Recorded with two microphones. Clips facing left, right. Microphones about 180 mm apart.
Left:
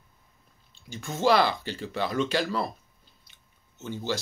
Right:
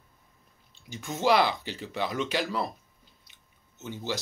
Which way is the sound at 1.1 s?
15° right (ahead or behind).